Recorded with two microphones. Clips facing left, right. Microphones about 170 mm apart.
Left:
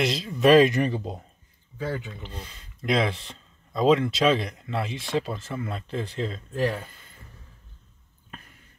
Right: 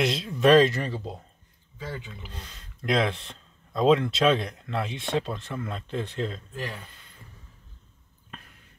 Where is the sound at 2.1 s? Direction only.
Centre (ahead or behind).